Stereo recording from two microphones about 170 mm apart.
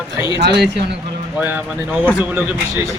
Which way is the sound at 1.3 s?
10° right (ahead or behind).